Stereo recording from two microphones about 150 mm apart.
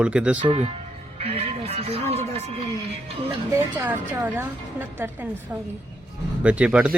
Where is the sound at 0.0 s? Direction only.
5° right (ahead or behind).